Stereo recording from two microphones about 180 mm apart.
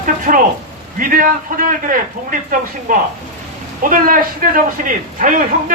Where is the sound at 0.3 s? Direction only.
45° right (ahead or behind).